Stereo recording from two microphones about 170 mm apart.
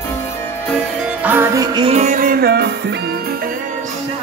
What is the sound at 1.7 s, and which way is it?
Music, 35° right (ahead or behind).